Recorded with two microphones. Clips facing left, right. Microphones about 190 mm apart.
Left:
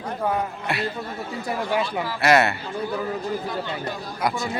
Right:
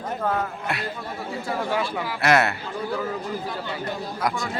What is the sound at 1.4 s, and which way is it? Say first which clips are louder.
Speech: left 1 dB; 20° left (ahead or behind).